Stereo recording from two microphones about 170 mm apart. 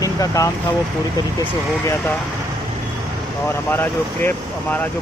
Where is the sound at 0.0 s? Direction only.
20° left (ahead or behind).